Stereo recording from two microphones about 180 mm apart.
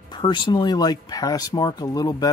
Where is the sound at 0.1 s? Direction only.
25° left (ahead or behind).